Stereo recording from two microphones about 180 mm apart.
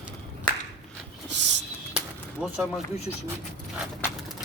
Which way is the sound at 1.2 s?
80° right.